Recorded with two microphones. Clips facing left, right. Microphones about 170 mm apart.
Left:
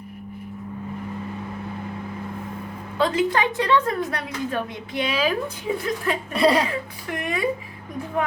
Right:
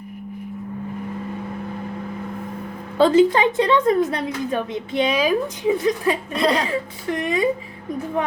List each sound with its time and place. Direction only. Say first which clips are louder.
3.0 s a woman's voice: right 7 dB; 25° right (ahead or behind)
6.3 s speech: left 4 dB; 5° left (ahead or behind)
6.7 s a woman's voice: right 5 dB; 20° right (ahead or behind)